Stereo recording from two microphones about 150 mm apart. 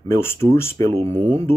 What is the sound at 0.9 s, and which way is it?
Speech, 45° right (ahead or behind).